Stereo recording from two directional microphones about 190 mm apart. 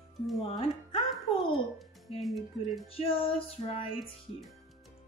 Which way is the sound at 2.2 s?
Centre (ahead or behind).